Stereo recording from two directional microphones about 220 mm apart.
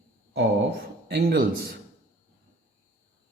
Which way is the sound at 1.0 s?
45° right (ahead or behind).